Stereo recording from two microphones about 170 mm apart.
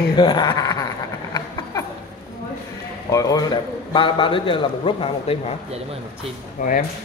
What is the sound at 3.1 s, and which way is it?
A man's voice, 20° left (ahead or behind).